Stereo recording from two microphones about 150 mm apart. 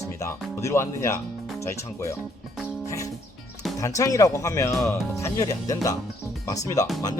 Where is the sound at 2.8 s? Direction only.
20° left (ahead or behind).